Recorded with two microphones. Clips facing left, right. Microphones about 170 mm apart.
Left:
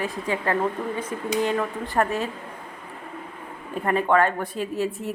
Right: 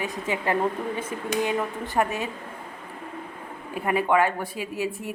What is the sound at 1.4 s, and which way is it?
Speech, 10° right (ahead or behind).